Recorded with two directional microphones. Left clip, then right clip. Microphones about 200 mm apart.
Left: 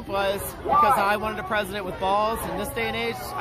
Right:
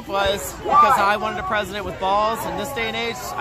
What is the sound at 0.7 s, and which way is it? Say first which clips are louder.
Speech: right 5 dB; 50° right (ahead or behind).